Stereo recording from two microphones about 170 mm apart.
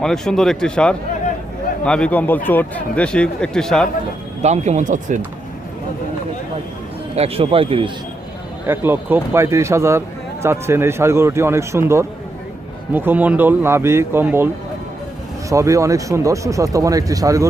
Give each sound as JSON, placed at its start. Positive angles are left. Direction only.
{"t": 0.0, "sound": "a man's voice", "side_deg": 5}
{"t": 4.4, "sound": "speech", "side_deg": -40}
{"t": 7.2, "sound": "a man's voice", "side_deg": -35}
{"t": 8.6, "sound": "a man's voice", "side_deg": -15}